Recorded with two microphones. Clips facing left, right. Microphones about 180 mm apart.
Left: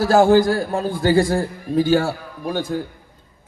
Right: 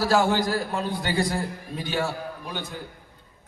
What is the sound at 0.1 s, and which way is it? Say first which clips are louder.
A man's voice: left 11 dB; 45° left (ahead or behind).